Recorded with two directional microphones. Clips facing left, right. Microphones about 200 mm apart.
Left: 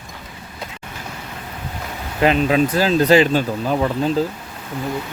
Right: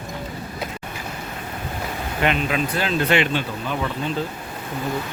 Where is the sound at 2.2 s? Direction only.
35° left (ahead or behind).